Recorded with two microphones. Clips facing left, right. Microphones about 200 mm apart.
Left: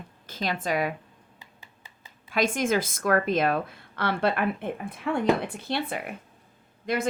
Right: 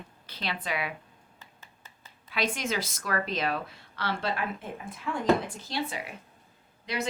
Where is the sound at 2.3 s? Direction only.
50° left (ahead or behind).